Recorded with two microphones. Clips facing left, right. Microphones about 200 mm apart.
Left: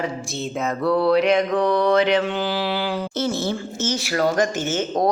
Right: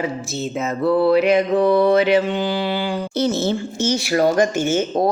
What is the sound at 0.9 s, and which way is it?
Speech, 5° right (ahead or behind).